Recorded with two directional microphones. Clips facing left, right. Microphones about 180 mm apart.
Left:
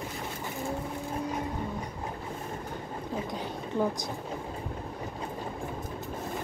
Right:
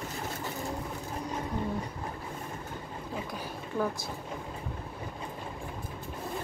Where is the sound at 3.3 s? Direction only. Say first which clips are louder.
Left 2 dB; 20° left (ahead or behind).